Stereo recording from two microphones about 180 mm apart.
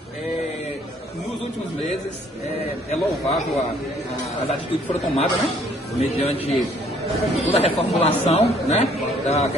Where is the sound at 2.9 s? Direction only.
35° left (ahead or behind).